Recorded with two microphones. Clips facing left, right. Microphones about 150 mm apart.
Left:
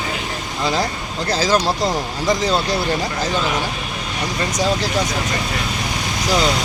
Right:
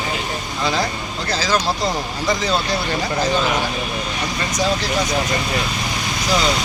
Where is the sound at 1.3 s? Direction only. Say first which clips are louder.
Left 3 dB; 45° left (ahead or behind).